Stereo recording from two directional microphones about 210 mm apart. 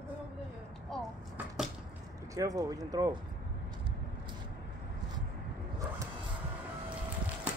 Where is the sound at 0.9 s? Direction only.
Centre (ahead or behind).